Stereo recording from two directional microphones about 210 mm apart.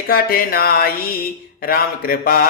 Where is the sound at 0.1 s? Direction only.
45° left (ahead or behind).